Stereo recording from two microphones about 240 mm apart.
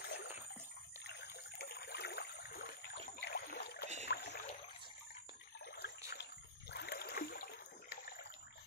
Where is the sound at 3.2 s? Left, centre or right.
Left.